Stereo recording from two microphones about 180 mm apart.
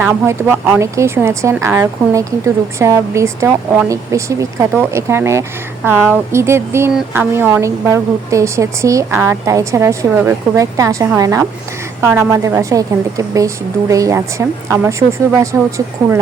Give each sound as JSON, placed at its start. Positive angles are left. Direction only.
{"t": 0.0, "sound": "speech", "side_deg": -10}